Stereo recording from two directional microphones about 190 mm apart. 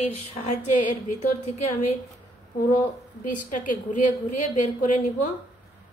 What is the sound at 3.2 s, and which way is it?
A woman's voice, 45° left (ahead or behind).